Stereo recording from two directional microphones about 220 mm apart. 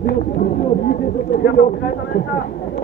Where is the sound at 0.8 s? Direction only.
50° left (ahead or behind).